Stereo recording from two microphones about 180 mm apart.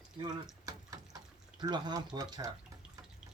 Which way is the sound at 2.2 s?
20° right (ahead or behind).